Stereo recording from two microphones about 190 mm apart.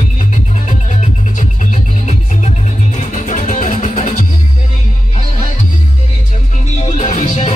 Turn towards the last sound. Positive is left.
turn(degrees=40)  # may be behind; listen again after turning